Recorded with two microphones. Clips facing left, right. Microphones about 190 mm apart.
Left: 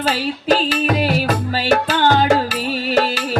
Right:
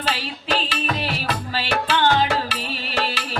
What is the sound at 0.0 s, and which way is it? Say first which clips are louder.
Music: left 7 dB; 45° left (ahead or behind).